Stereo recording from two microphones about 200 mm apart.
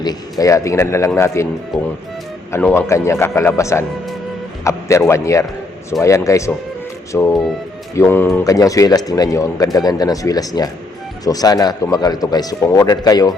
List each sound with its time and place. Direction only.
0.0 s speech: 20° left (ahead or behind)
1.7 s speech: centre (ahead or behind)
2.5 s a man's voice: 10° left (ahead or behind)